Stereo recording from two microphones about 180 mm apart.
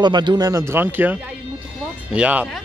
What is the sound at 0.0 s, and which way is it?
Speech, 25° right (ahead or behind).